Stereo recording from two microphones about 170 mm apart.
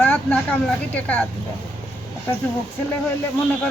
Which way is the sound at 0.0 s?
10° left (ahead or behind).